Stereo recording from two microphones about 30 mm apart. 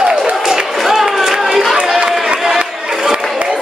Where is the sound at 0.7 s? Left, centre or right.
Centre.